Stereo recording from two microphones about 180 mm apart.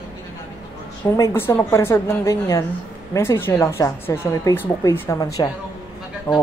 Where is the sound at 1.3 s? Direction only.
15° left (ahead or behind).